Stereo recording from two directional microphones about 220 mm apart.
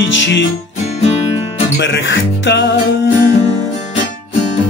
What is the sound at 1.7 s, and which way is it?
Speech, 55° left (ahead or behind).